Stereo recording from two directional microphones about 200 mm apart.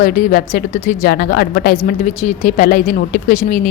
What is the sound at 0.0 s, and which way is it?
A woman's voice, 40° left (ahead or behind).